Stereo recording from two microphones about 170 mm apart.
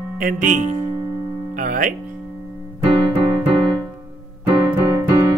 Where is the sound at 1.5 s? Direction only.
50° right (ahead or behind).